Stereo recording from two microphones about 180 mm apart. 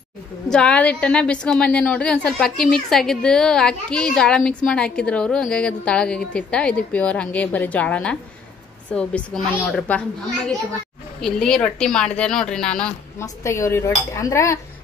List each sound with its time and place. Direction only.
0.5 s a woman's voice: 5° left (ahead or behind)
11.1 s a woman's voice: 5° left (ahead or behind)
13.2 s dishes: 15° left (ahead or behind)